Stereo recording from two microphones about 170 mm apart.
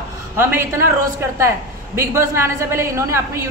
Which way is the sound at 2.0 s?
15° right (ahead or behind).